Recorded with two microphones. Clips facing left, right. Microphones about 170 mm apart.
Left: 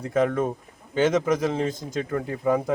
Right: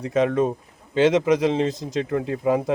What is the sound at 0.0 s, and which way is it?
Speech, centre (ahead or behind).